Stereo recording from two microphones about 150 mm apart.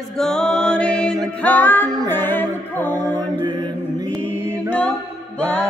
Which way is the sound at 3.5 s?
30° right (ahead or behind).